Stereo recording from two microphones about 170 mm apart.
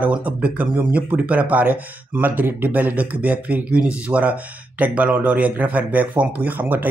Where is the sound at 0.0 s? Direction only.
10° right (ahead or behind).